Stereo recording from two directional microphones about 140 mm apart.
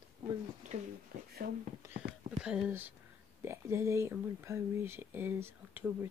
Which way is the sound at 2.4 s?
5° right (ahead or behind).